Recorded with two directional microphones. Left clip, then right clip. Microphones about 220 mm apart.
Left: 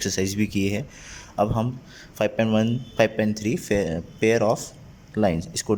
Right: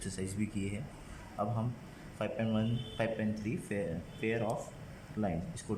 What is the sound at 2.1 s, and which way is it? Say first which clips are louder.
A man's voice: left 14 dB; 45° left (ahead or behind).